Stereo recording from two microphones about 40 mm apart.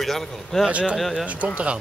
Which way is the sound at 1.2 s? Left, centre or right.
Right.